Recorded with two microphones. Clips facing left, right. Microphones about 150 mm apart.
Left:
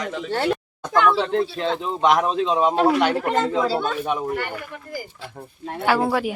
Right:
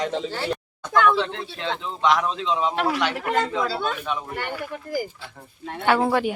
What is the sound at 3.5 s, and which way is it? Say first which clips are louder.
Speech: left 4 dB; 35° left (ahead or behind).